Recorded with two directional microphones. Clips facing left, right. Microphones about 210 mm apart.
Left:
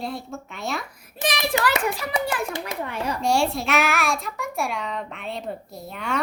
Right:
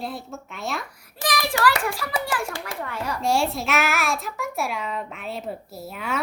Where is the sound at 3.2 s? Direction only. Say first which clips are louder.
Left 1 dB; centre (ahead or behind).